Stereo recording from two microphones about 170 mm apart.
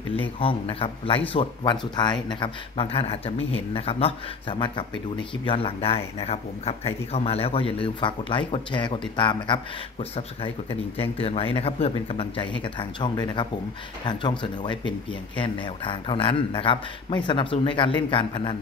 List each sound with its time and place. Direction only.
0.1 s speech: 30° left (ahead or behind)